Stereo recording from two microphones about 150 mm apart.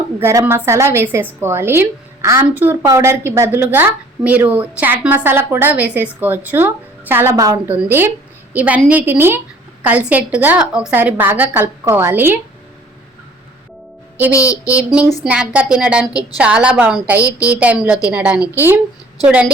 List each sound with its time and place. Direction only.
0.2 s a woman's voice: 15° right (ahead or behind)
14.3 s child singing: 20° left (ahead or behind)
14.7 s a woman's voice: 10° right (ahead or behind)